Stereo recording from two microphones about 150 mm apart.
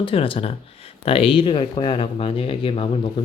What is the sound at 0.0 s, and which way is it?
Speech, 40° left (ahead or behind).